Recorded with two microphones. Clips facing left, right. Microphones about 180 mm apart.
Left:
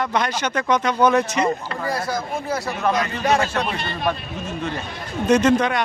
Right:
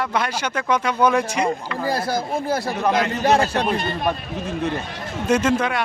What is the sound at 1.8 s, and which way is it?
Speech, 30° right (ahead or behind).